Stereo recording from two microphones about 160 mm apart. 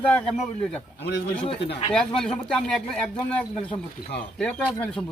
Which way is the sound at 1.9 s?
5° left (ahead or behind).